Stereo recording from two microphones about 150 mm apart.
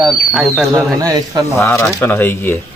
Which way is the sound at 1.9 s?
15° left (ahead or behind).